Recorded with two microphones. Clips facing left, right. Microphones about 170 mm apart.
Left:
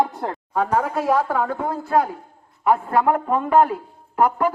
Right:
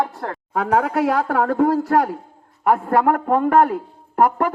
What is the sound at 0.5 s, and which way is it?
A man's voice, 70° right (ahead or behind).